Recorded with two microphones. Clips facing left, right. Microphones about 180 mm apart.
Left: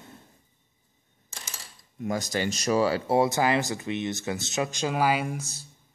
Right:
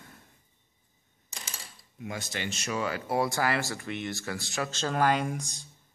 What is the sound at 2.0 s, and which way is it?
Speech, 40° left (ahead or behind).